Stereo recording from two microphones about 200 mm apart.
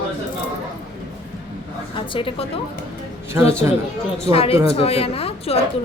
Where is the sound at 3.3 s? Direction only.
15° right (ahead or behind).